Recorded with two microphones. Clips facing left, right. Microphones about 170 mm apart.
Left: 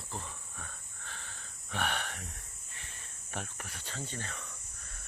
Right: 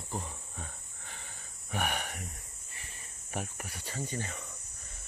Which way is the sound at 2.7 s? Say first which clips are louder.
Right 1 dB; 5° right (ahead or behind).